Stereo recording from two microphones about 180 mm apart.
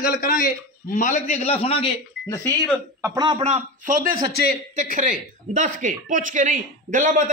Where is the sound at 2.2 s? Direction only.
15° left (ahead or behind).